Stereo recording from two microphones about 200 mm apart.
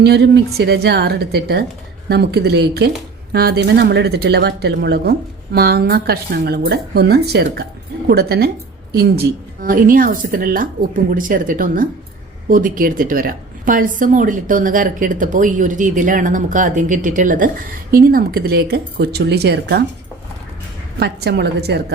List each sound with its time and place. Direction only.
0.0 s a woman's voice: 55° right (ahead or behind)
21.0 s speech: 55° right (ahead or behind)